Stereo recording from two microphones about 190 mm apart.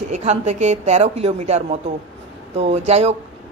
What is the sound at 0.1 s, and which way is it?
A woman's voice, 35° right (ahead or behind).